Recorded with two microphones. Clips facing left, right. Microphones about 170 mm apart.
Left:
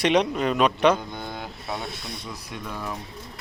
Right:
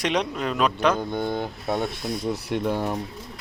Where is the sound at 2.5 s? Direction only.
65° right (ahead or behind).